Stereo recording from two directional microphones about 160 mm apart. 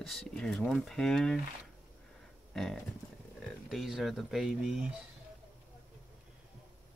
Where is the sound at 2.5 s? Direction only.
Centre (ahead or behind).